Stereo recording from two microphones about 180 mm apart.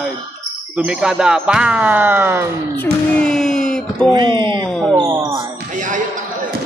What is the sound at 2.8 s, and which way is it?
Speech, 5° left (ahead or behind).